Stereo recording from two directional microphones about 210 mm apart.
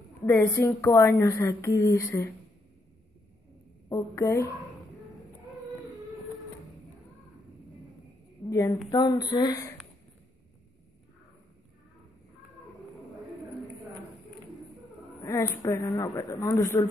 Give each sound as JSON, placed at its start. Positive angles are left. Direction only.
{"t": 0.2, "sound": "a woman's voice", "side_deg": 15}
{"t": 3.9, "sound": "a woman's voice", "side_deg": 15}
{"t": 8.5, "sound": "a woman's voice", "side_deg": 15}
{"t": 15.2, "sound": "a woman's voice", "side_deg": 15}